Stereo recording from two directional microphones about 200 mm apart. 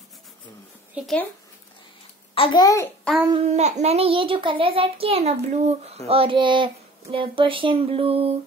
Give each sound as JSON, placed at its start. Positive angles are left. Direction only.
{"t": 0.9, "sound": "speech", "side_deg": 0}
{"t": 2.3, "sound": "a child's voice", "side_deg": 25}
{"t": 3.4, "sound": "a child's voice", "side_deg": -35}